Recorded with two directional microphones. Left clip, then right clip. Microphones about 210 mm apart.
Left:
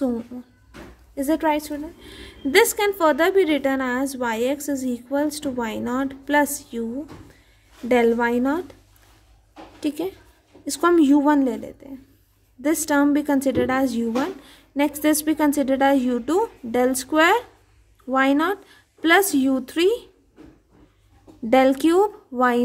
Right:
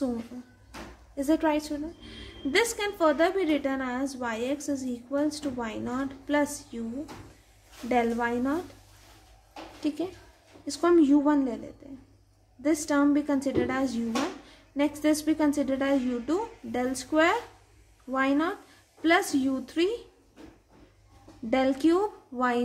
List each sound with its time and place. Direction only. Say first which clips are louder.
1.1 s a woman's voice: left 5 dB; 40° left (ahead or behind)
7.9 s a woman's voice: left 8 dB; 50° left (ahead or behind)
9.8 s a woman's voice: left 5 dB; 45° left (ahead or behind)
21.5 s a woman's voice: left 8 dB; 45° left (ahead or behind)